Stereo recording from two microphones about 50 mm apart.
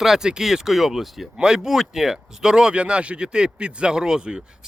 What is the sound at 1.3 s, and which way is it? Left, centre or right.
Speech, centre.